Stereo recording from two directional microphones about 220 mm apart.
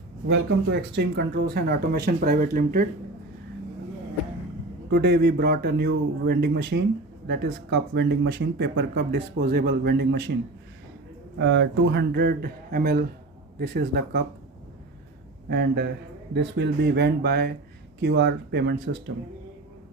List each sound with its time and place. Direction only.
0.3 s speech: 55° right (ahead or behind)
4.9 s speech: 50° right (ahead or behind)
11.3 s speech: 55° right (ahead or behind)
15.4 s speech: 50° right (ahead or behind)